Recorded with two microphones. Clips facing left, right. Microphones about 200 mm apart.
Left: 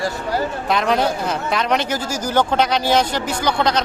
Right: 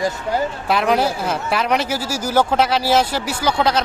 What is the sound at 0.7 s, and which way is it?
Speech, 5° right (ahead or behind).